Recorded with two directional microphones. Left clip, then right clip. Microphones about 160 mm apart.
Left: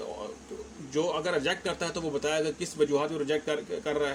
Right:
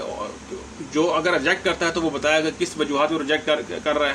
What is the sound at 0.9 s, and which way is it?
A man's voice, 45° left (ahead or behind).